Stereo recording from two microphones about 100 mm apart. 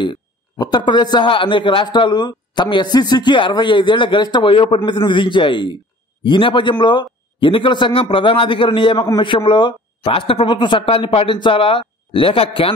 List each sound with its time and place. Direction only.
0.0 s a man's voice: 50° left (ahead or behind); by 12.7 s 70° left (ahead or behind)